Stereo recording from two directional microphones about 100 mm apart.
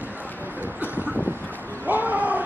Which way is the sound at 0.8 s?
15° right (ahead or behind).